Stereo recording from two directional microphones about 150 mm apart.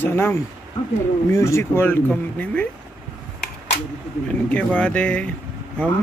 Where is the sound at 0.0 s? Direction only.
15° left (ahead or behind).